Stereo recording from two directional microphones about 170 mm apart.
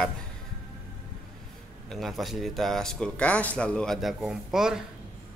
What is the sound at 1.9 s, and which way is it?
A man's voice, centre (ahead or behind).